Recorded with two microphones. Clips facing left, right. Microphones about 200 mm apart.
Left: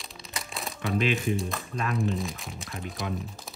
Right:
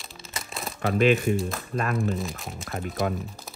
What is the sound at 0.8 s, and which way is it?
Speech, 50° right (ahead or behind).